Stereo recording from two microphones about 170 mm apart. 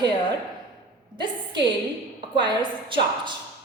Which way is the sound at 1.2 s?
25° right (ahead or behind).